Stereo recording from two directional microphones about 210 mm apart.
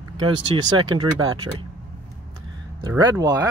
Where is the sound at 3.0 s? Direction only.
20° right (ahead or behind).